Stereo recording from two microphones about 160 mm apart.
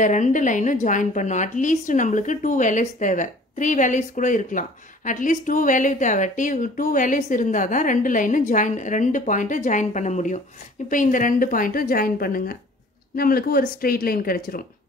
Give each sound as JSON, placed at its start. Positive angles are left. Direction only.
{"t": 0.0, "sound": "a woman's voice", "side_deg": 50}